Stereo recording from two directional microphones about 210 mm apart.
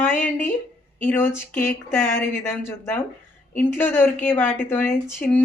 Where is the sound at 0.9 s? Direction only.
10° left (ahead or behind).